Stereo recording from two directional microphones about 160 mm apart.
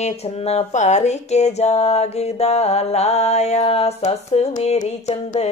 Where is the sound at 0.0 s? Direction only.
40° left (ahead or behind).